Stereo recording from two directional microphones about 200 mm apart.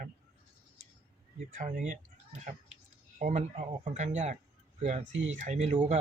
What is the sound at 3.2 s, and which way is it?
Speech, 35° right (ahead or behind).